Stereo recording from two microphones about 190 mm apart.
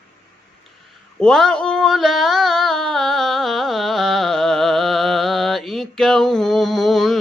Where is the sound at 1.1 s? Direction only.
5° left (ahead or behind).